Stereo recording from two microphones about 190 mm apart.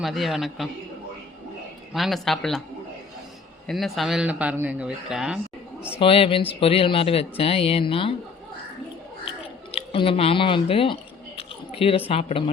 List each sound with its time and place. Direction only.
0.0 s a man's voice: centre (ahead or behind)
1.9 s a man's voice: centre (ahead or behind)
3.7 s a man's voice: centre (ahead or behind)
6.0 s speech: 30° left (ahead or behind)
9.7 s speech: 30° left (ahead or behind)
11.3 s a sound: 30° left (ahead or behind)